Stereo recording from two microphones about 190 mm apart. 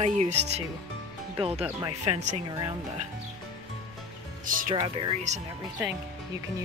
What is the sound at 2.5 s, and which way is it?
Speech, 20° right (ahead or behind).